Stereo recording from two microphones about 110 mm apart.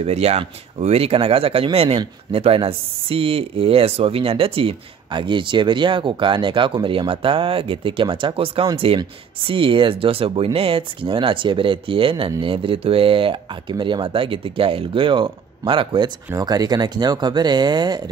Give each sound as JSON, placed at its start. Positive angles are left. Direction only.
{"t": 0.0, "sound": "speech", "side_deg": -75}
{"t": 16.3, "sound": "speech", "side_deg": -35}